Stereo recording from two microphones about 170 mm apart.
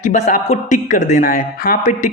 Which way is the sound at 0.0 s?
50° left (ahead or behind).